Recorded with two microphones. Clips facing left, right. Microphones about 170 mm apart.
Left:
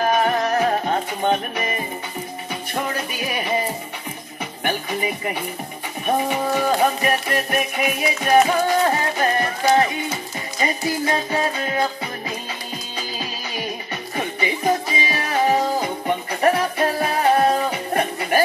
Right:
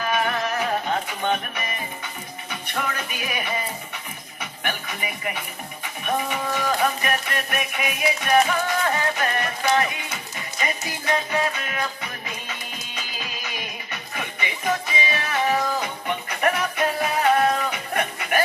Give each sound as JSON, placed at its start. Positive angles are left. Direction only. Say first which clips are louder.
{"t": 0.0, "sound": "music", "louder": "left 5 dB", "side_deg": 40}
{"t": 2.7, "sound": "music", "louder": "left 3 dB", "side_deg": 30}
{"t": 4.6, "sound": "music", "louder": "left 7 dB", "side_deg": 35}
{"t": 12.9, "sound": "music", "louder": "left 5 dB", "side_deg": 35}